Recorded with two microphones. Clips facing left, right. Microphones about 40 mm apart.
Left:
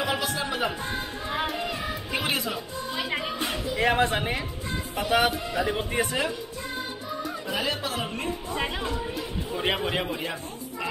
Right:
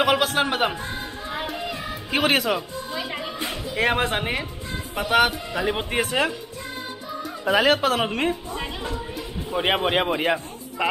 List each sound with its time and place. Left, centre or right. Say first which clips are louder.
0.0 s a man's voice: right 7 dB; right
1.3 s music: left 1 dB; centre
2.0 s a man's voice: right 9 dB; right
3.7 s speech: right 1 dB; right
5.6 s speech: right 3 dB; right
5.9 s a man's voice: right 5 dB; right
7.4 s speech: right 12 dB; right
8.5 s speech: left 2 dB; centre
9.5 s speech: right 6 dB; right
10.0 s speech: right 8 dB; right